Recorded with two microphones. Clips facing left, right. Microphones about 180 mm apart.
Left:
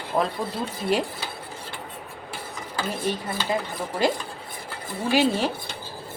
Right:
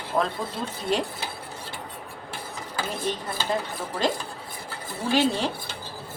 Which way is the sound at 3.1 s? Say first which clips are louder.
Left 1 dB; 10° left (ahead or behind).